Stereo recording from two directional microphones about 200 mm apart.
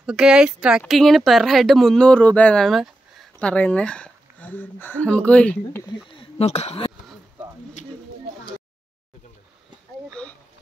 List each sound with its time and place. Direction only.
0.0 s speech: 5° right (ahead or behind)
6.1 s speech: 30° left (ahead or behind)
10.2 s a sound: 5° left (ahead or behind)